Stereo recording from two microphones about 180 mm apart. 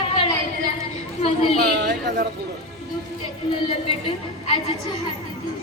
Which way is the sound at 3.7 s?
35° left (ahead or behind).